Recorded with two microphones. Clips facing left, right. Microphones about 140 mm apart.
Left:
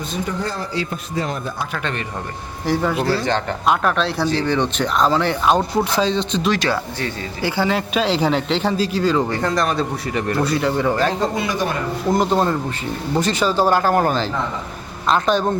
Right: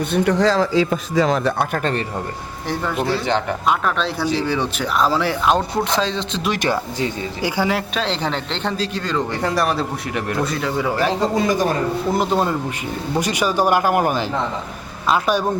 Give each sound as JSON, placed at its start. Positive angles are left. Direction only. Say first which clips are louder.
{"t": 0.1, "sound": "speech", "louder": "right 10 dB", "side_deg": -80}
{"t": 1.7, "sound": "a man's voice", "louder": "right 4 dB", "side_deg": -40}
{"t": 2.6, "sound": "speech", "louder": "left 3 dB", "side_deg": 0}
{"t": 6.5, "sound": "speech", "louder": "right 3 dB", "side_deg": -15}
{"t": 7.9, "sound": "speech", "louder": "left 4 dB", "side_deg": 5}
{"t": 9.4, "sound": "speech", "louder": "even", "side_deg": -10}
{"t": 11.3, "sound": "a man's voice", "louder": "right 4 dB", "side_deg": -40}
{"t": 12.0, "sound": "speech", "louder": "left 4 dB", "side_deg": -5}